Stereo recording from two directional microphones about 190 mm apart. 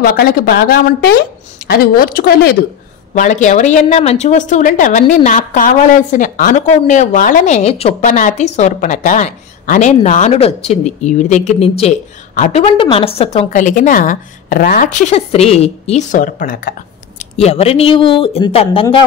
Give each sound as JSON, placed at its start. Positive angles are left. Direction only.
{"t": 0.0, "sound": "speech", "side_deg": 50}
{"t": 3.2, "sound": "a woman's voice", "side_deg": 40}
{"t": 17.4, "sound": "speech", "side_deg": 35}